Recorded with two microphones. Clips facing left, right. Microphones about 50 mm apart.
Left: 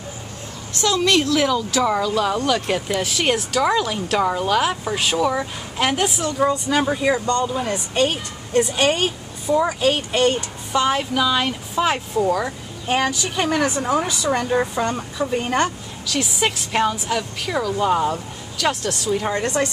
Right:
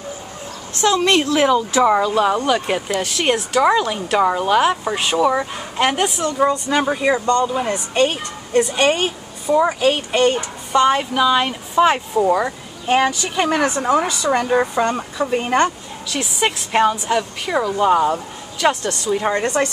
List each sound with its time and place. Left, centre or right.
0.7 s speech: right
2.9 s speech: centre
7.2 s a woman's voice: centre
12.2 s speech: centre
18.7 s a woman's voice: centre